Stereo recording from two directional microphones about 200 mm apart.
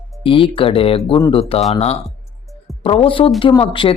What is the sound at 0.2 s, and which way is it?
Speech, 25° left (ahead or behind).